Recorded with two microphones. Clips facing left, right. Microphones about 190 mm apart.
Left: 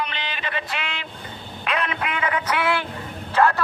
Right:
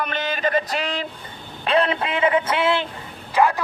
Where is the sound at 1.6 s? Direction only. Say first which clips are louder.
Right 6 dB; 30° right (ahead or behind).